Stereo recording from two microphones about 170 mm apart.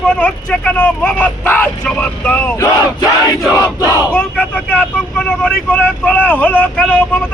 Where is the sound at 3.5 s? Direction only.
20° left (ahead or behind).